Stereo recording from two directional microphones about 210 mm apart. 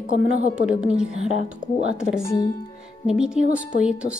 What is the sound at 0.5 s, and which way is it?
Speech, 5° right (ahead or behind).